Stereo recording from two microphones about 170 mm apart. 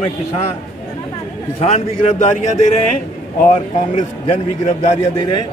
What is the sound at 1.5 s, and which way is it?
A man's voice, 40° left (ahead or behind).